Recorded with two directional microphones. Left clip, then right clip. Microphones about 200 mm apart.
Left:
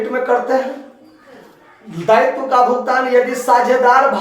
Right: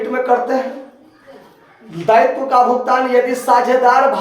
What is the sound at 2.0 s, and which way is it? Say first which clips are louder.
Speech: right 1 dB; 30° right (ahead or behind).